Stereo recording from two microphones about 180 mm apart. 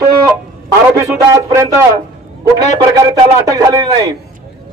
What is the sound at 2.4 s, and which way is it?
A man's voice, 20° right (ahead or behind).